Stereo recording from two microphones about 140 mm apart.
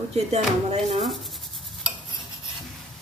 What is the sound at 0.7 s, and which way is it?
Speech, 40° right (ahead or behind).